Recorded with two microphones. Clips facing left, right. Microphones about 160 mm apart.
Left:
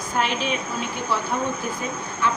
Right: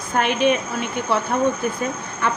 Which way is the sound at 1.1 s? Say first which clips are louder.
Right 4 dB; 60° right (ahead or behind).